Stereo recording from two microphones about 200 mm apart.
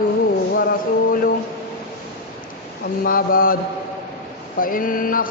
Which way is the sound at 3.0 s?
45° left (ahead or behind).